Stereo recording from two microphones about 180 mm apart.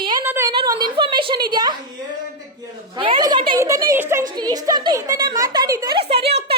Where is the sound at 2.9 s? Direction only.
25° right (ahead or behind).